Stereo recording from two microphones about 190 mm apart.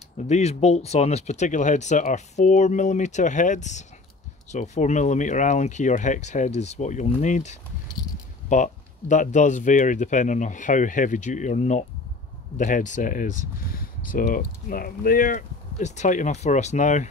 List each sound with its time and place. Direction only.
0.3 s speech: 35° left (ahead or behind)
9.1 s speech: 40° left (ahead or behind)